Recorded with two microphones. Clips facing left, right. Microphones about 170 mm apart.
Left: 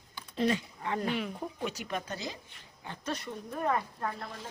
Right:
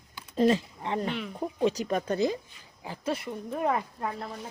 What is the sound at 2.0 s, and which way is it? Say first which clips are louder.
Speech: right 12 dB; 55° right (ahead or behind).